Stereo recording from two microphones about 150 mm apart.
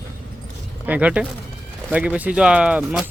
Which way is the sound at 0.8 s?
10° right (ahead or behind).